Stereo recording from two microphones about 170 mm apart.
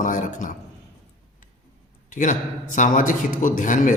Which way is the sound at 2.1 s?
50° left (ahead or behind).